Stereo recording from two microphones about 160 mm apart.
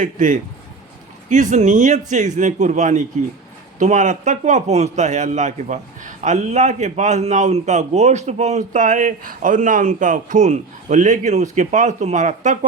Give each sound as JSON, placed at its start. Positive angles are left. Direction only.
{"t": 0.0, "sound": "a man's voice", "side_deg": -50}